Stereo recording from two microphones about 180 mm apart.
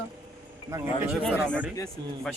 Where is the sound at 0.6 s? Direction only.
20° right (ahead or behind).